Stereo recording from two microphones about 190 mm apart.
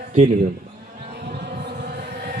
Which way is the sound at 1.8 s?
55° right (ahead or behind).